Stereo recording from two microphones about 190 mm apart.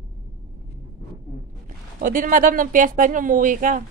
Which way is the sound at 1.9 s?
45° right (ahead or behind).